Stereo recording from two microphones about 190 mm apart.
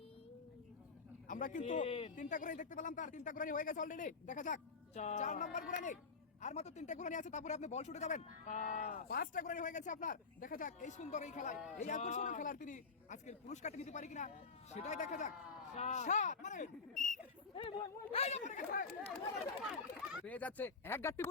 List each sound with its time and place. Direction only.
1.3 s a man's voice: 45° left (ahead or behind)
1.6 s speech: 35° left (ahead or behind)
2.1 s speech: 40° left (ahead or behind)
17.5 s speech: 30° left (ahead or behind); by 18.9 s 45° left (ahead or behind)
20.2 s speech: 10° left (ahead or behind)